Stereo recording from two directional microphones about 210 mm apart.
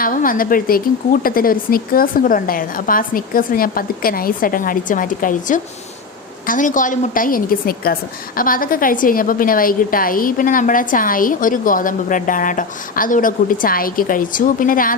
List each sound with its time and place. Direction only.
0.0 s a woman's voice: 40° left (ahead or behind)